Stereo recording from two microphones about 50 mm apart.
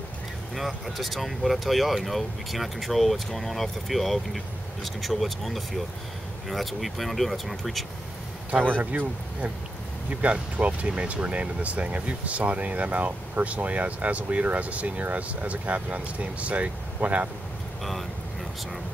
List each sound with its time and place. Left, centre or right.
0.6 s speech: centre
8.7 s speech: right